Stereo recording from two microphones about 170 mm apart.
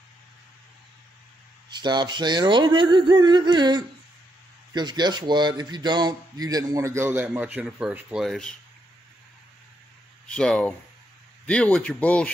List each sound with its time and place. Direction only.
1.7 s speech: 25° right (ahead or behind); by 8.5 s 5° left (ahead or behind)
10.2 s speech: 5° left (ahead or behind)